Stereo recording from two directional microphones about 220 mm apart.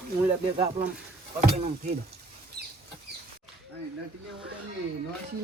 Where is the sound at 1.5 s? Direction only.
30° right (ahead or behind).